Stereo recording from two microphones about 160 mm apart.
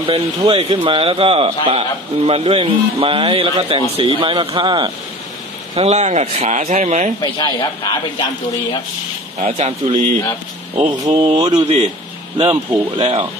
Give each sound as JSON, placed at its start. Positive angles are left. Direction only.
{"t": 0.5, "sound": "a man's voice", "side_deg": -35}
{"t": 5.8, "sound": "speech", "side_deg": -45}
{"t": 7.2, "sound": "speech", "side_deg": 25}
{"t": 9.4, "sound": "a man's voice", "side_deg": -40}
{"t": 11.1, "sound": "a man's voice", "side_deg": -25}